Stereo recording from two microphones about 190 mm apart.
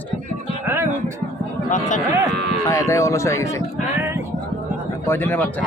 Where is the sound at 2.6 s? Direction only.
15° left (ahead or behind).